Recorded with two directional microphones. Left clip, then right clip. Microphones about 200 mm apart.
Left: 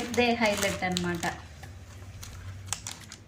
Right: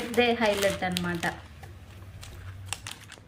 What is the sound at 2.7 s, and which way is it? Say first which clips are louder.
Typing: even; 5° right (ahead or behind).